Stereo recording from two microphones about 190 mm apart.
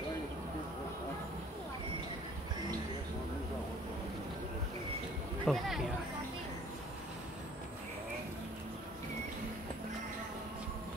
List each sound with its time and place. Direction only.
5.4 s speech: centre (ahead or behind)